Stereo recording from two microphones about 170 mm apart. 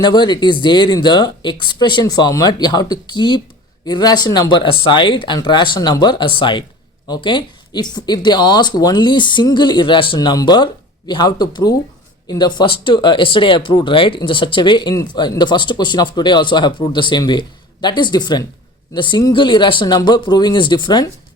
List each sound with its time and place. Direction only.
0.0 s speech: 25° left (ahead or behind)